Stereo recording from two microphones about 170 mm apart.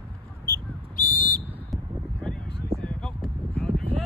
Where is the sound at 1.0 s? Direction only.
55° left (ahead or behind).